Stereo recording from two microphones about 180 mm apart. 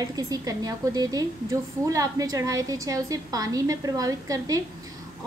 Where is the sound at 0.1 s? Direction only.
20° right (ahead or behind).